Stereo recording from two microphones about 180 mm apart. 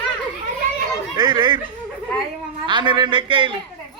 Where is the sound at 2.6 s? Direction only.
25° right (ahead or behind).